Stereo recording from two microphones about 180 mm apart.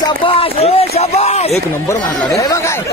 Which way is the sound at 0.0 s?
30° left (ahead or behind).